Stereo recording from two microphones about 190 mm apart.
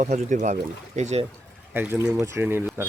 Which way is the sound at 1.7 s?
10° right (ahead or behind).